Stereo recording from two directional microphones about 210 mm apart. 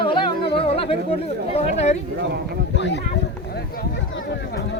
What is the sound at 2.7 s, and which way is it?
Speech, 55° left (ahead or behind).